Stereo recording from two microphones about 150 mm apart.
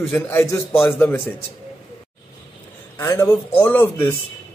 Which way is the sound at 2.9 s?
20° left (ahead or behind).